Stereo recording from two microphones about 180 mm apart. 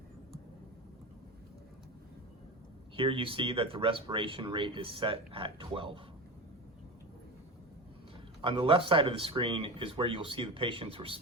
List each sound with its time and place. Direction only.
2.9 s speech: 30° right (ahead or behind)
8.4 s speech: 30° right (ahead or behind)